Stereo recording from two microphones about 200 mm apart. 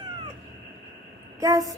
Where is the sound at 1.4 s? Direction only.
15° right (ahead or behind).